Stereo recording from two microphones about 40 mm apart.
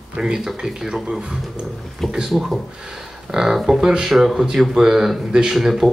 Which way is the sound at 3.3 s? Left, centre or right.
Centre.